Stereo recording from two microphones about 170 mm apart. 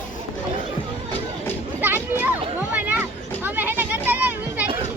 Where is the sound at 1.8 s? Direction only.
10° right (ahead or behind).